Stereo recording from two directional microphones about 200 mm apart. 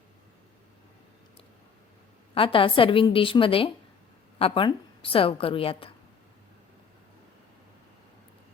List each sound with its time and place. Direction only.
2.3 s a woman's voice: 25° left (ahead or behind)